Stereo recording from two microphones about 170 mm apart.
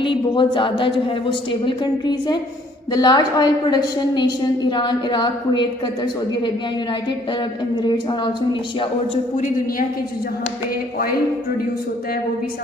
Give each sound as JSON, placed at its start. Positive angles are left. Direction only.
{"t": 0.0, "sound": "a woman's voice", "side_deg": 30}
{"t": 7.8, "sound": "a woman's voice", "side_deg": 25}